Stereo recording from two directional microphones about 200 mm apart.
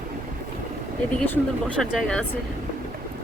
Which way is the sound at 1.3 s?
5° left (ahead or behind).